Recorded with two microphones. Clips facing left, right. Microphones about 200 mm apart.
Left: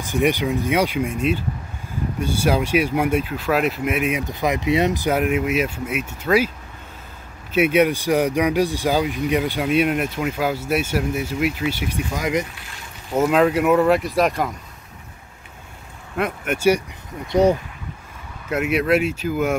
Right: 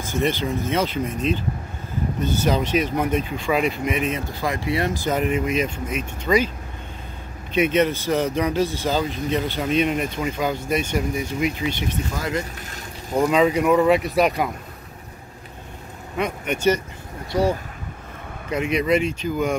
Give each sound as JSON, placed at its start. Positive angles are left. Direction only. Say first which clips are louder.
{"t": 0.0, "sound": "speech", "louder": "left 3 dB", "side_deg": 15}
{"t": 4.3, "sound": "speech", "louder": "left 4 dB", "side_deg": 20}
{"t": 7.5, "sound": "speech", "louder": "left 2 dB", "side_deg": 10}
{"t": 12.5, "sound": "boat", "louder": "right 4 dB", "side_deg": -40}
{"t": 13.1, "sound": "speech", "louder": "left 1 dB", "side_deg": 5}
{"t": 16.2, "sound": "speech", "louder": "left 1 dB", "side_deg": 5}
{"t": 17.3, "sound": "speech", "louder": "left 5 dB", "side_deg": 20}
{"t": 18.5, "sound": "speech", "louder": "left 1 dB", "side_deg": 5}